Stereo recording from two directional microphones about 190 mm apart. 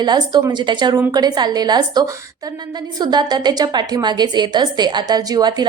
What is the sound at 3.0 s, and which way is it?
A woman's voice, 20° right (ahead or behind).